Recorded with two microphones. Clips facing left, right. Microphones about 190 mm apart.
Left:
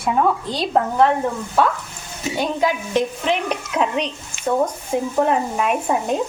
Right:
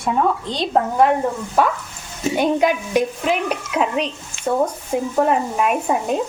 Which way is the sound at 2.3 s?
20° right (ahead or behind).